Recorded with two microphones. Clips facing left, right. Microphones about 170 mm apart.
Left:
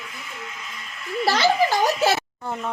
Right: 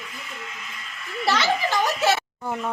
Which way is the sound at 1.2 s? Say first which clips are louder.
Left 3 dB; 35° left (ahead or behind).